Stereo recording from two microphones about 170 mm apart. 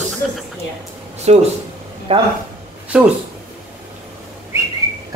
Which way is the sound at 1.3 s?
40° right (ahead or behind).